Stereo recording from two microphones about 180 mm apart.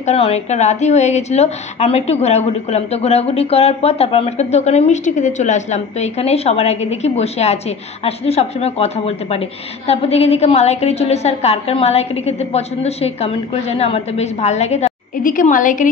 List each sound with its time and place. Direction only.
0.0 s a woman's voice: 35° left (ahead or behind)